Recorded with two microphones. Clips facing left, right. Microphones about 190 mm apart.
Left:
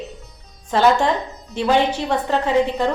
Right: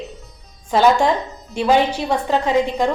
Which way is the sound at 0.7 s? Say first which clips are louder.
Right 1 dB; 10° right (ahead or behind).